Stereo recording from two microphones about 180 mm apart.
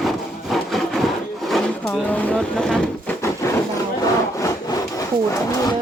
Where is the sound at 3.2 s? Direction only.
15° left (ahead or behind).